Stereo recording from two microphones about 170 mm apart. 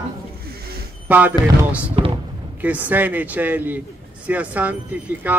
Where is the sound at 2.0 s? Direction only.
35° right (ahead or behind).